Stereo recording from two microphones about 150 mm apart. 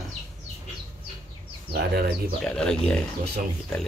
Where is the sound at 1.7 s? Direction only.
90° right.